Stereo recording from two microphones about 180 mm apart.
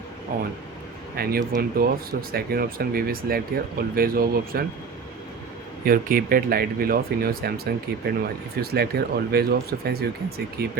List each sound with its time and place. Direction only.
0.3 s speech: 50° right (ahead or behind)
5.8 s speech: 50° right (ahead or behind)